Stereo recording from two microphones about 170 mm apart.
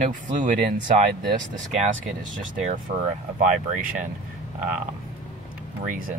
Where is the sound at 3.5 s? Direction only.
50° right (ahead or behind).